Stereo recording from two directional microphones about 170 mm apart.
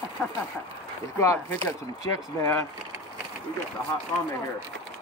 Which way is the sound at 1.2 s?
15° left (ahead or behind).